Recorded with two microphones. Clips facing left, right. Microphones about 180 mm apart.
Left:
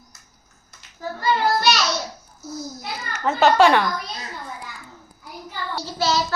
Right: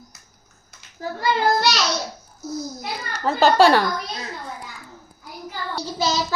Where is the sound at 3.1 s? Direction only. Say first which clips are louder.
Even; 35° right (ahead or behind).